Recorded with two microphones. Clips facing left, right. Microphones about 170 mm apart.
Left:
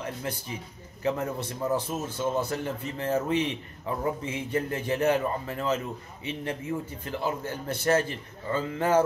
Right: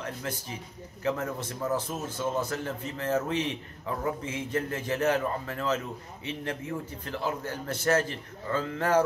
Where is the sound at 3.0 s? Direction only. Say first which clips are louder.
Left 2 dB; 15° left (ahead or behind).